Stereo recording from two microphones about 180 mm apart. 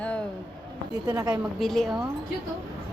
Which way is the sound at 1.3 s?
Centre (ahead or behind).